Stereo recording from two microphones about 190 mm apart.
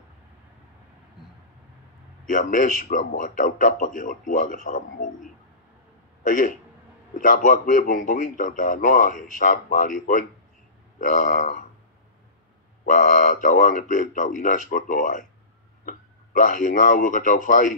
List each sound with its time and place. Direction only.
2.3 s speech: 40° left (ahead or behind)
6.2 s a man's voice: 45° left (ahead or behind)
12.8 s speech: 45° left (ahead or behind)